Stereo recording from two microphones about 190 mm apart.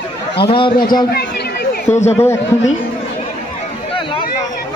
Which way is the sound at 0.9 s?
50° left (ahead or behind).